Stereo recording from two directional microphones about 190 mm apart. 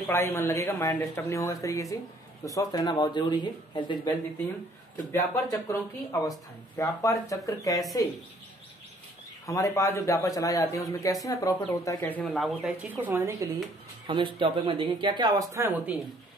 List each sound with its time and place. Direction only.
0.0 s speech: 10° left (ahead or behind)
5.1 s speech: 15° left (ahead or behind)
9.5 s speech: 15° left (ahead or behind); by 13.5 s 15° right (ahead or behind)
14.0 s speech: 25° right (ahead or behind)